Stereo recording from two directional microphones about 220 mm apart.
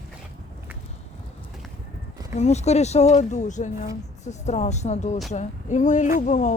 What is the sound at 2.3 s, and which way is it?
Speech, 30° left (ahead or behind).